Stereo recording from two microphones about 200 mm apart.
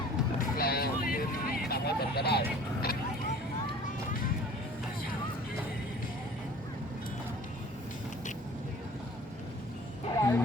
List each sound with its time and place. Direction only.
0.5 s vehicle: 50° left (ahead or behind)
10.1 s music: 15° left (ahead or behind)